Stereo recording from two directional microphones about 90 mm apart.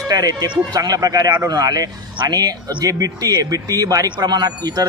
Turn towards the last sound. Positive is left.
turn(degrees=-45)  # may be behind; listen again after turning